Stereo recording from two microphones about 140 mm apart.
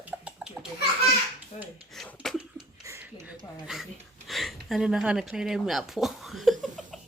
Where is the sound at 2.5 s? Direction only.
20° right (ahead or behind).